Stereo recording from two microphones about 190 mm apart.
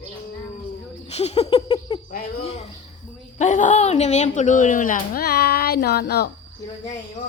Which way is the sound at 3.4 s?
40° left (ahead or behind).